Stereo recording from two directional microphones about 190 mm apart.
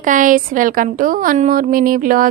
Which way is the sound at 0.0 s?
45° right (ahead or behind).